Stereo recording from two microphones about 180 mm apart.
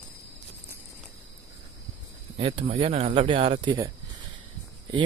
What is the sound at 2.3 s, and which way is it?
Speech, 30° right (ahead or behind).